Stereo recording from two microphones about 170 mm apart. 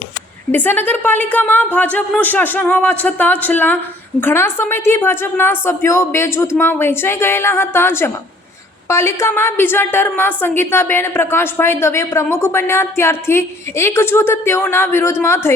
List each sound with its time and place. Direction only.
0.5 s a woman's voice: 10° left (ahead or behind)